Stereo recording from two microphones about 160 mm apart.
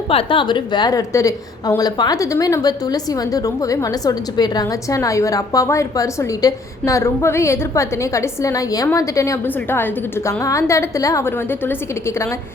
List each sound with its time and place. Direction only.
0.1 s a woman's voice: 35° left (ahead or behind); by 12.3 s 15° left (ahead or behind)